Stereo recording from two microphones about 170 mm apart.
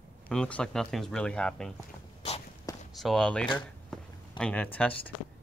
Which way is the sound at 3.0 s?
5° left (ahead or behind).